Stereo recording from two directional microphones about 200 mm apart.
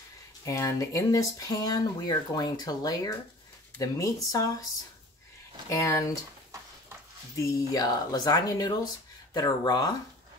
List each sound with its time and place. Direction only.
0.5 s speech: 15° left (ahead or behind)
5.7 s speech: 15° left (ahead or behind)
7.3 s speech: 15° left (ahead or behind)